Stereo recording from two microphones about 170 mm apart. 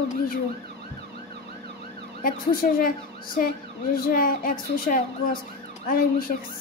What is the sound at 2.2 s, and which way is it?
Speech, 55° left (ahead or behind).